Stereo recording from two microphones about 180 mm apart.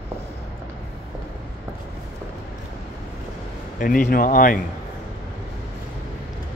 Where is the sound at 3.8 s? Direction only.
50° left (ahead or behind).